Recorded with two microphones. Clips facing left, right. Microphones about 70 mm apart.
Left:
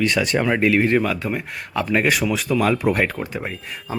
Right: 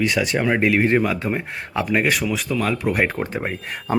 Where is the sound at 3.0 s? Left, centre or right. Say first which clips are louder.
Right 2 dB; right.